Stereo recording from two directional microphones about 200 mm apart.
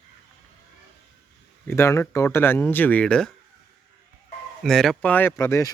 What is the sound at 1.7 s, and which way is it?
Speech, 15° left (ahead or behind).